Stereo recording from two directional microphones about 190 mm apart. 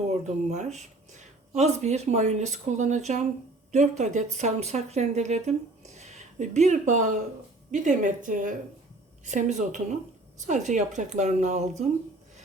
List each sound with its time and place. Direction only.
0.1 s a woman's voice: 35° right (ahead or behind)